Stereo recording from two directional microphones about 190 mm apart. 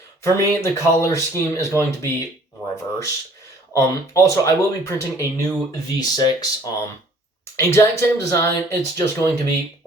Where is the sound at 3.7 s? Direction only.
15° left (ahead or behind).